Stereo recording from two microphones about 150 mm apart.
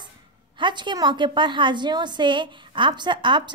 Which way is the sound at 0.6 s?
30° right (ahead or behind).